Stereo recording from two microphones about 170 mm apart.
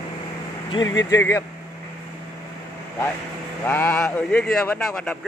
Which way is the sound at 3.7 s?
10° left (ahead or behind).